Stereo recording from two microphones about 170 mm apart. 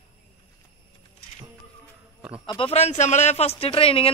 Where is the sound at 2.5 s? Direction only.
35° left (ahead or behind).